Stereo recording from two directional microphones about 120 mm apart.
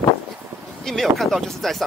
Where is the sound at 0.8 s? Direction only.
Centre (ahead or behind).